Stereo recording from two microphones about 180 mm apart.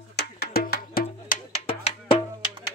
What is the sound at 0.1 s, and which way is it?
Music, 65° left (ahead or behind).